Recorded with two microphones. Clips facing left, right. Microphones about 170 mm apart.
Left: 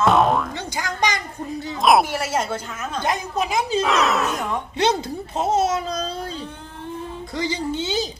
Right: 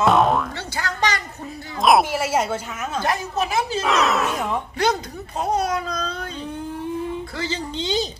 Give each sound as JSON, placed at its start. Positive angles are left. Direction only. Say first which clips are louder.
{"t": 0.0, "sound": "music", "louder": "even", "side_deg": 0}
{"t": 0.7, "sound": "a sound", "louder": "even", "side_deg": 15}
{"t": 1.8, "sound": "speech", "louder": "even", "side_deg": 0}
{"t": 3.0, "sound": "speech", "louder": "even", "side_deg": 20}
{"t": 3.8, "sound": "speech", "louder": "right 2 dB", "side_deg": 0}
{"t": 5.4, "sound": "speech", "louder": "left 2 dB", "side_deg": 25}
{"t": 7.3, "sound": "speech", "louder": "left 3 dB", "side_deg": 15}